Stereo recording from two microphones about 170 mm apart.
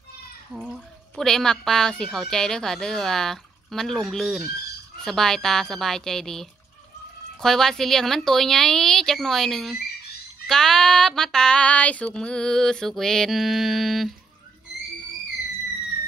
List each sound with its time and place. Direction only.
0.5 s speech: 5° right (ahead or behind)